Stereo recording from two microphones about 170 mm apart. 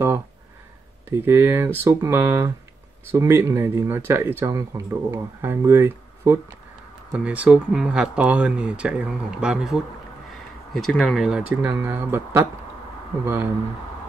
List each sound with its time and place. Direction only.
1.1 s speech: 15° right (ahead or behind)